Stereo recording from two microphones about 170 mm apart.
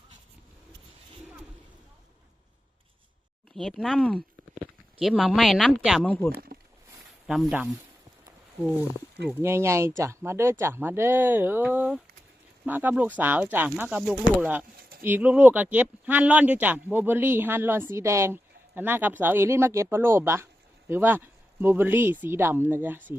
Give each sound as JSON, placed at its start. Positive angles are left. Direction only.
{"t": 3.5, "sound": "speech", "side_deg": 5}
{"t": 6.1, "sound": "speech", "side_deg": 15}
{"t": 7.3, "sound": "speech", "side_deg": 0}
{"t": 9.4, "sound": "speech", "side_deg": -15}